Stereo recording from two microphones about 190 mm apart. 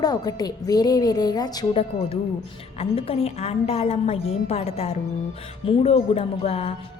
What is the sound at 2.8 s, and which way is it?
A woman's voice, 30° left (ahead or behind).